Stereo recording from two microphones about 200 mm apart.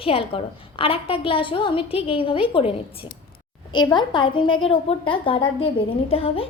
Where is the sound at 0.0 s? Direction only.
30° left (ahead or behind).